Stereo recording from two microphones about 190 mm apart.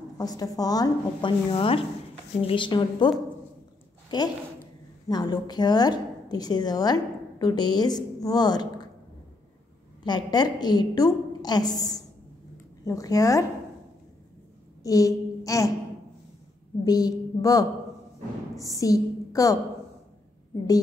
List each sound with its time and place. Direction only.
0.2 s a woman's voice: 20° left (ahead or behind)
4.1 s a woman's voice: 20° left (ahead or behind)
10.0 s a woman's voice: 20° left (ahead or behind)
14.8 s a woman's voice: 15° left (ahead or behind)
16.8 s a sound: 20° left (ahead or behind)
18.6 s a woman's voice: 15° left (ahead or behind)